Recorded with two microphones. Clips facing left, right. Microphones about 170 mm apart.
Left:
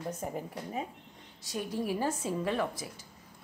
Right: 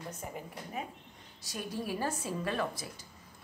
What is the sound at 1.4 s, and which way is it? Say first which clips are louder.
A woman's voice: left 4 dB; 20° left (ahead or behind).